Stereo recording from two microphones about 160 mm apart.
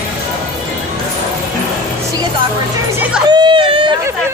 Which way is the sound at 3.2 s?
30° right (ahead or behind).